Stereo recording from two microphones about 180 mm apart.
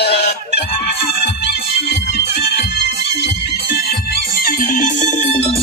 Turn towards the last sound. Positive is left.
turn(degrees=35)  # may be behind; listen again after turning